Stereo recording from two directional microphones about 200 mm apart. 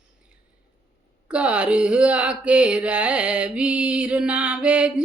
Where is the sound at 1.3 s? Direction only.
5° right (ahead or behind).